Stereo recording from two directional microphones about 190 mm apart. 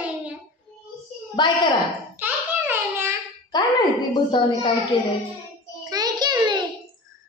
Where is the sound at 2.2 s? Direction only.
10° right (ahead or behind).